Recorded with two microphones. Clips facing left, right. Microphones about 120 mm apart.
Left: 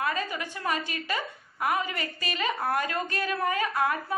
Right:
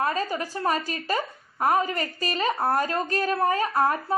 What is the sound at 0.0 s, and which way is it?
A woman's voice, 35° right (ahead or behind).